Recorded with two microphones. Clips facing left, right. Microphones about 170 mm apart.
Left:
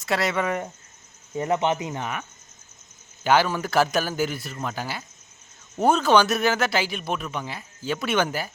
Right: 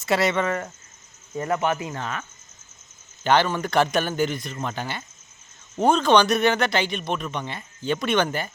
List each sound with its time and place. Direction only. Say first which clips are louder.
0.0 s speech: right 3 dB; centre (ahead or behind)
0.4 s speech: even; 15° left (ahead or behind)
3.2 s speech: even; 5° left (ahead or behind)